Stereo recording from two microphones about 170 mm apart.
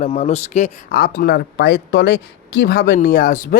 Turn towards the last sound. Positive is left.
turn(degrees=55)  # may be behind; listen again after turning